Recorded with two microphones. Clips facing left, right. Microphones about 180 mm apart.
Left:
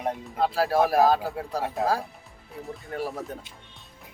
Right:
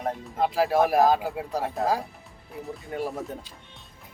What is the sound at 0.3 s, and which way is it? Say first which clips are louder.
Speech: right 1 dB; 15° right (ahead or behind).